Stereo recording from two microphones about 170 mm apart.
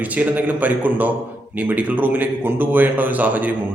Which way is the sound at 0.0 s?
10° right (ahead or behind).